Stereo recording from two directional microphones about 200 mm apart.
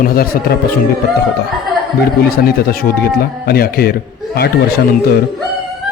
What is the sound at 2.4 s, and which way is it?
A man's voice, 50° left (ahead or behind).